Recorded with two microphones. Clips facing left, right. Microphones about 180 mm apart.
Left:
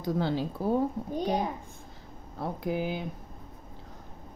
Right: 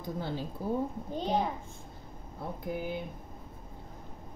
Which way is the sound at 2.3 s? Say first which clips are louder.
Left 5 dB; 90° left.